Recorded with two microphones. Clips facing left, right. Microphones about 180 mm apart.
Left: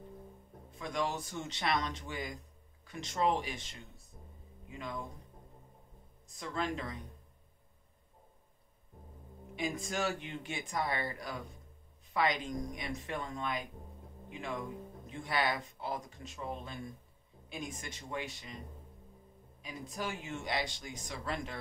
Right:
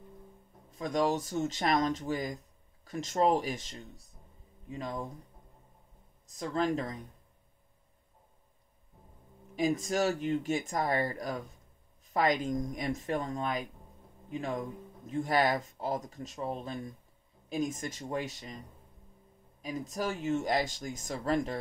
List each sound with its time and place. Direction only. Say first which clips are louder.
0.7 s speech: right 7 dB; 40° right (ahead or behind)
6.2 s speech: right 6 dB; 40° right (ahead or behind)
9.6 s speech: right 7 dB; 40° right (ahead or behind)
19.6 s speech: right 6 dB; 40° right (ahead or behind)